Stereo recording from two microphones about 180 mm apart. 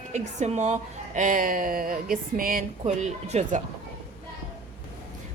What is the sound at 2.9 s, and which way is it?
Speech, 40° right (ahead or behind).